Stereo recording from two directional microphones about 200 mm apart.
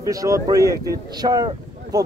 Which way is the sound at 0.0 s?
15° right (ahead or behind).